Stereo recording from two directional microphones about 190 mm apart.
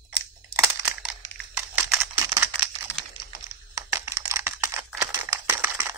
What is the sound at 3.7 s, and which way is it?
Computer keyboard, 15° right (ahead or behind).